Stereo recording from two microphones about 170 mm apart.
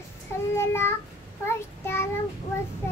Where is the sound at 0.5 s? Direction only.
15° left (ahead or behind).